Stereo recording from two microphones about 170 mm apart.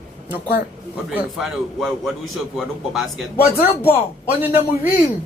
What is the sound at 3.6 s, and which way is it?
Speech, 35° left (ahead or behind).